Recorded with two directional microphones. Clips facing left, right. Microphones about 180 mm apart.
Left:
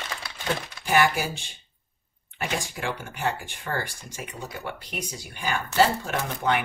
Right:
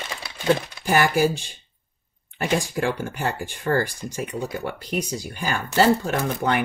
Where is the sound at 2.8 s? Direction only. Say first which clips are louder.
Right 4 dB; 45° right (ahead or behind).